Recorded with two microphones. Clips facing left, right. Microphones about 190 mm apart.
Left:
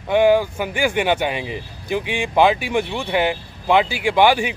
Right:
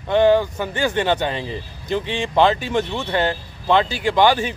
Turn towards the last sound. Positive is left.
turn(degrees=15)  # may be behind; listen again after turning